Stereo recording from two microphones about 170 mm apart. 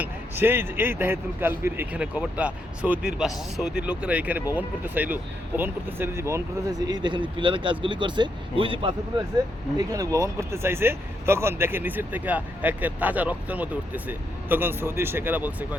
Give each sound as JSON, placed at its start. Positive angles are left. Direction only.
{"t": 0.0, "sound": "speech", "side_deg": -15}
{"t": 9.7, "sound": "speech", "side_deg": -20}